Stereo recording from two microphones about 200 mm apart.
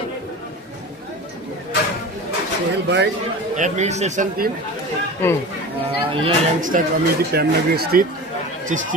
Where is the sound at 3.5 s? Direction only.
35° right (ahead or behind).